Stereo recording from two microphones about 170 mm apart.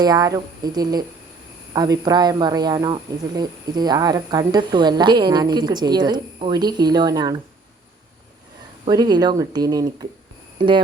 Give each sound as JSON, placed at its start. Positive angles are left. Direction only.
{"t": 0.0, "sound": "speech", "side_deg": -20}
{"t": 8.9, "sound": "speech", "side_deg": -25}